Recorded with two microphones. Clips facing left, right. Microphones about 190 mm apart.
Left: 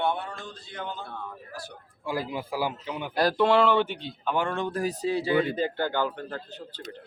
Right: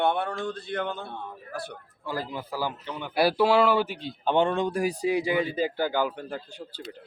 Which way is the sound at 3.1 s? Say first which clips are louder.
Right 1 dB; 5° right (ahead or behind).